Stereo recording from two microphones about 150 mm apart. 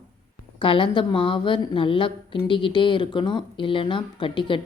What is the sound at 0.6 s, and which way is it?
A woman's voice, 35° left (ahead or behind).